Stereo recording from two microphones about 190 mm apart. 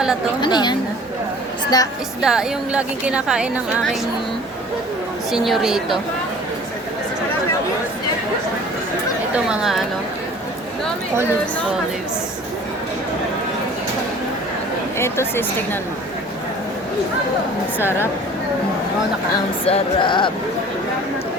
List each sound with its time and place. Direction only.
0.4 s speech: 25° left (ahead or behind)
2.2 s speech: 5° right (ahead or behind)
5.3 s speech: centre (ahead or behind)
9.3 s speech: 5° right (ahead or behind)
14.9 s a woman's voice: 15° left (ahead or behind)
17.7 s a woman's voice: 10° left (ahead or behind)
19.6 s speech: 30° left (ahead or behind)